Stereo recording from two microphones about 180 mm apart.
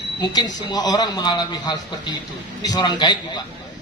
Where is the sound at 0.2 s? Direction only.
20° left (ahead or behind).